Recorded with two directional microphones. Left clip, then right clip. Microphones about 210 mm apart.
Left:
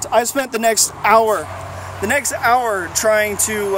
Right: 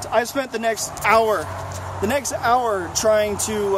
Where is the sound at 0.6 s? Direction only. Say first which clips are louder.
Left 8 dB; 45° left (ahead or behind).